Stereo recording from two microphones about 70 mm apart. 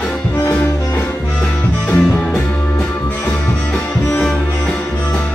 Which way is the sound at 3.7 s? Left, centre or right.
Centre.